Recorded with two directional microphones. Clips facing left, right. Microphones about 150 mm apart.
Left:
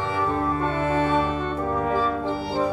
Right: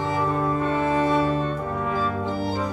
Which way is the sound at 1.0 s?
35° right (ahead or behind).